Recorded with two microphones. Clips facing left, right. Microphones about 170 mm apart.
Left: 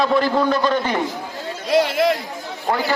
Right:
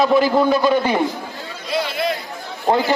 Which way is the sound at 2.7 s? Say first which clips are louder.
Right 5 dB; 25° right (ahead or behind).